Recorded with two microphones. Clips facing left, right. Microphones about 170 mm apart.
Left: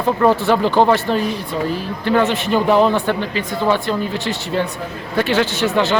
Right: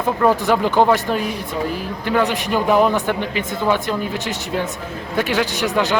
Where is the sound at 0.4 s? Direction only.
15° right (ahead or behind).